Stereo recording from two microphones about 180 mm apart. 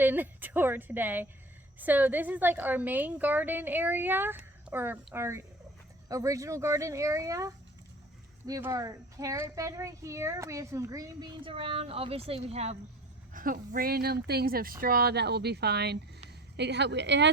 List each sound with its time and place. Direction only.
0.0 s a child's voice: 10° right (ahead or behind); by 12.7 s 35° right (ahead or behind)
13.3 s a woman's voice: 50° right (ahead or behind); by 17.2 s 75° right (ahead or behind)